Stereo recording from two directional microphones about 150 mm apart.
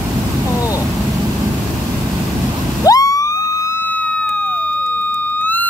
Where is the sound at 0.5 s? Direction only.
20° left (ahead or behind).